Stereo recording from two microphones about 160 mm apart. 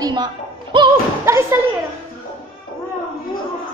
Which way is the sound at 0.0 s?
25° right (ahead or behind).